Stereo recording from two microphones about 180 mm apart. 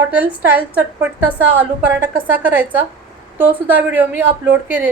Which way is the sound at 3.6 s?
10° right (ahead or behind).